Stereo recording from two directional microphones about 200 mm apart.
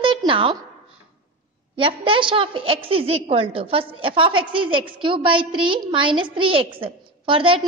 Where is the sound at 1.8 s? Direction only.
25° right (ahead or behind).